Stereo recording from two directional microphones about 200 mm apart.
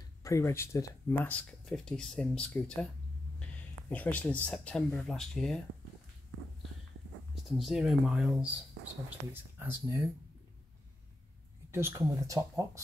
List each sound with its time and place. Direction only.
0.2 s speech: 15° left (ahead or behind)
3.9 s speech: 10° left (ahead or behind)
7.4 s speech: centre (ahead or behind)
11.7 s speech: 15° right (ahead or behind)